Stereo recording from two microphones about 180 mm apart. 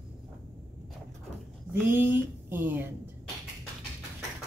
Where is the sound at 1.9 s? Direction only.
10° right (ahead or behind).